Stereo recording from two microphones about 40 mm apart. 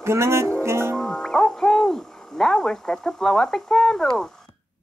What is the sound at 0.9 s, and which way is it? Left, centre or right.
Music, centre.